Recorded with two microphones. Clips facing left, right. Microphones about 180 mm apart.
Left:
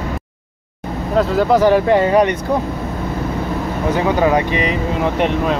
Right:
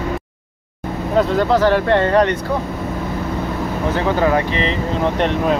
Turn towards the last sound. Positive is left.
turn(degrees=15)  # may be behind; listen again after turning